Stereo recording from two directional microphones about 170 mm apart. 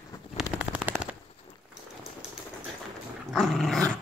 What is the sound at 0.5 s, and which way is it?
Machine gun, 10° right (ahead or behind).